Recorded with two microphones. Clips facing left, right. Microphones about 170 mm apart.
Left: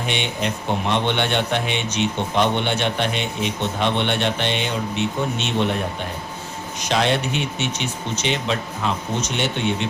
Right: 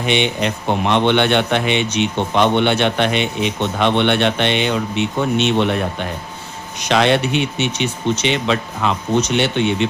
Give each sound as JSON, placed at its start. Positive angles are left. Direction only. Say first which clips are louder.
{"t": 0.0, "sound": "a man's voice", "louder": "right 6 dB", "side_deg": -75}
{"t": 6.7, "sound": "a man's voice", "louder": "right 5 dB", "side_deg": -70}